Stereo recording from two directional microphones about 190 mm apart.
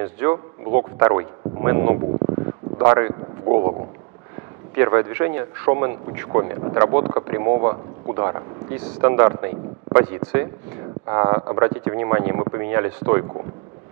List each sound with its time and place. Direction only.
0.0 s speech: 10° right (ahead or behind)
2.1 s a sound: 20° right (ahead or behind)
4.7 s speech: 15° right (ahead or behind)